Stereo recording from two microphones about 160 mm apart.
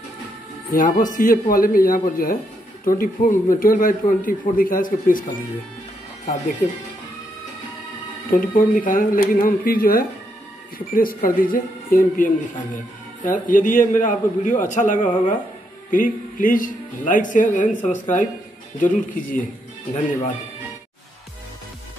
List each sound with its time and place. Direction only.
0.7 s speech: 60° left (ahead or behind)
8.3 s a man's voice: 60° left (ahead or behind)